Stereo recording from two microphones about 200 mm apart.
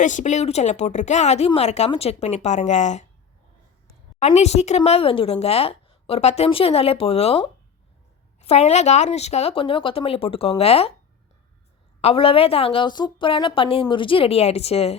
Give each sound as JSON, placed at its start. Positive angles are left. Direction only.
{"t": 0.0, "sound": "speech", "side_deg": 40}
{"t": 4.2, "sound": "speech", "side_deg": 30}
{"t": 12.0, "sound": "speech", "side_deg": 30}